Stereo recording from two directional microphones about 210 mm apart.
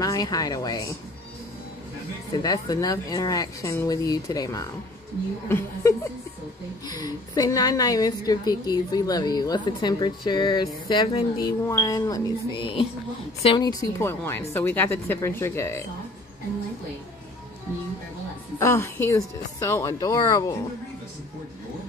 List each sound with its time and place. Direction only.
0.0 s speech: 15° left (ahead or behind)
2.3 s speech: 20° left (ahead or behind)
7.0 s a woman's voice: 15° left (ahead or behind)
18.6 s speech: 10° left (ahead or behind)